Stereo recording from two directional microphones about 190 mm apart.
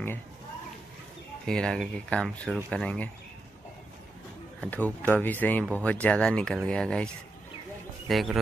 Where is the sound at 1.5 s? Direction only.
5° left (ahead or behind).